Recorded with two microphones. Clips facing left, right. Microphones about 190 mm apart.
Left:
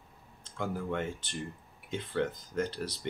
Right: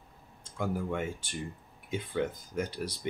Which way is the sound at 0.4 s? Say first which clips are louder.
Right 2 dB; 10° right (ahead or behind).